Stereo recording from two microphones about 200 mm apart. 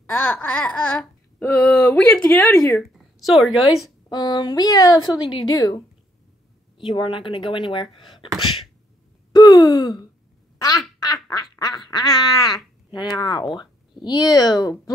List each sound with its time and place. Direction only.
0.0 s speech: 10° left (ahead or behind)
4.1 s a woman's voice: 20° left (ahead or behind)
6.8 s a woman's voice: 25° left (ahead or behind)
9.3 s a sound: 20° left (ahead or behind)
11.5 s speech: 20° left (ahead or behind)